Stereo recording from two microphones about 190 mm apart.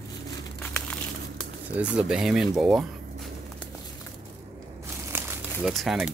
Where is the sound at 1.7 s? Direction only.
5° right (ahead or behind).